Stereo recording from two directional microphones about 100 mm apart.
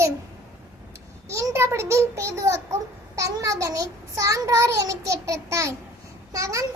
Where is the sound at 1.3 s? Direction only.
30° right (ahead or behind).